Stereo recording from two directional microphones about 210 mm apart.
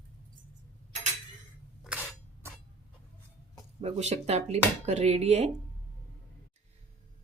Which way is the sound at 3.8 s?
30° right (ahead or behind).